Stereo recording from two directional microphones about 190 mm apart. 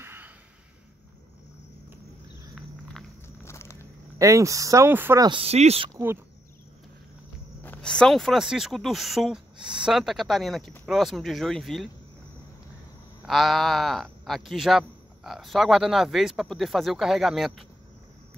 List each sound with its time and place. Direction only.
0.0 s a sound: 10° right (ahead or behind)
2.5 s a sound: centre (ahead or behind)
3.4 s vehicle: 15° left (ahead or behind)
4.2 s speech: 15° right (ahead or behind)
5.3 s speech: 30° right (ahead or behind)
7.6 s a man's voice: 5° left (ahead or behind)
13.2 s a man's voice: centre (ahead or behind)